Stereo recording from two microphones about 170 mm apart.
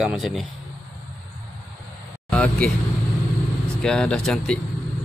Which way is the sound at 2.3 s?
5° left (ahead or behind).